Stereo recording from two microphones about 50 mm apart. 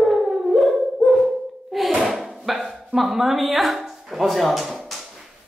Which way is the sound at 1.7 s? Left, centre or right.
Centre.